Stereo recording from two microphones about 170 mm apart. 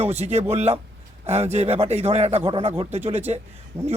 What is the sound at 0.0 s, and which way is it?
Speech, 35° right (ahead or behind).